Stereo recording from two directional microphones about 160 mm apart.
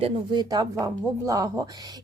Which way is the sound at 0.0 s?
25° right (ahead or behind).